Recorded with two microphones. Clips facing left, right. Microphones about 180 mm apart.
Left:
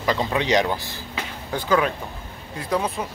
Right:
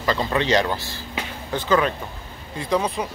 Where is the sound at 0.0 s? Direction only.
15° left (ahead or behind).